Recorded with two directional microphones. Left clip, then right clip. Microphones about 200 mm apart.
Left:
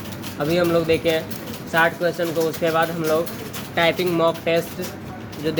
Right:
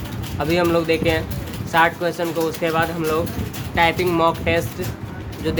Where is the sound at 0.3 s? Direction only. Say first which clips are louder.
Right 1 dB; 15° right (ahead or behind).